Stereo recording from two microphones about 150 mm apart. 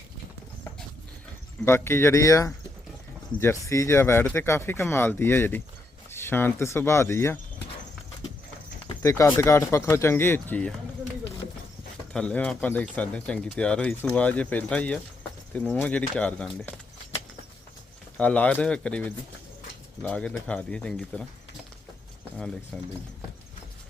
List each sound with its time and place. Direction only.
1.6 s speech: 15° left (ahead or behind)
9.0 s speech: 20° left (ahead or behind)
12.1 s speech: 10° left (ahead or behind)
18.2 s speech: 10° left (ahead or behind)
22.4 s speech: 5° left (ahead or behind)